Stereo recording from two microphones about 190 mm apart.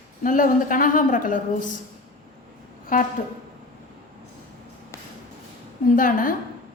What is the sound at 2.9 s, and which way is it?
Speech, 45° left (ahead or behind).